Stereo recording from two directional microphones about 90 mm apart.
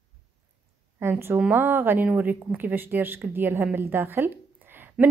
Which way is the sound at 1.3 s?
15° right (ahead or behind).